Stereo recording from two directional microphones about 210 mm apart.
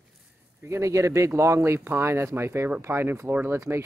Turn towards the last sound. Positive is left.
turn(degrees=-10)  # may be behind; listen again after turning